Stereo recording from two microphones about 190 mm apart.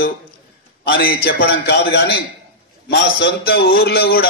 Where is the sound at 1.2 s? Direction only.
60° left (ahead or behind).